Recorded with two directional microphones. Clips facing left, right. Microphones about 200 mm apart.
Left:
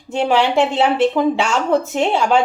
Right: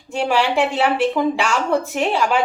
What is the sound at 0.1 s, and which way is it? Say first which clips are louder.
Speech: left 3 dB; 25° left (ahead or behind).